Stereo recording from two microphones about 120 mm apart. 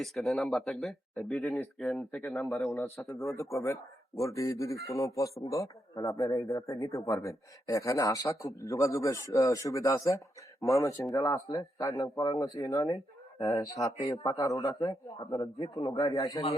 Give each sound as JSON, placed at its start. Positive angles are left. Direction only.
{"t": 0.0, "sound": "speech", "side_deg": 0}
{"t": 2.7, "sound": "speech", "side_deg": 20}